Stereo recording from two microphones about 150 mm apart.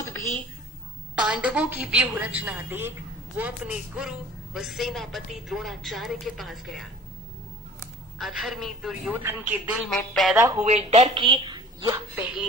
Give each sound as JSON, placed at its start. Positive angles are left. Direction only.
{"t": 1.2, "sound": "a woman's voice", "side_deg": -5}
{"t": 8.2, "sound": "a woman's voice", "side_deg": -5}
{"t": 10.7, "sound": "a woman's voice", "side_deg": -45}
{"t": 12.1, "sound": "a woman's voice", "side_deg": -10}